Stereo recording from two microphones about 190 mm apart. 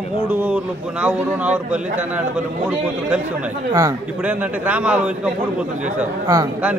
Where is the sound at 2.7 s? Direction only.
5° right (ahead or behind).